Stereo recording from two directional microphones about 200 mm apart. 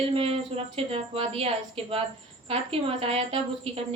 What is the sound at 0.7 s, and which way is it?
A woman's voice, 30° right (ahead or behind).